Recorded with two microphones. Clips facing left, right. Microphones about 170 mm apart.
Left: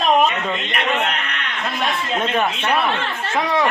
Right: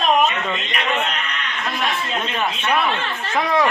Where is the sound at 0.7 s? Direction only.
65° left (ahead or behind).